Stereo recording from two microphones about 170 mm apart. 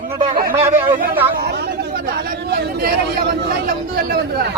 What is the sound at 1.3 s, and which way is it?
Speech, 75° right (ahead or behind).